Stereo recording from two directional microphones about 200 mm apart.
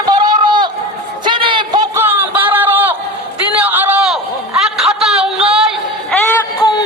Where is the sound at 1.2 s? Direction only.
25° right (ahead or behind).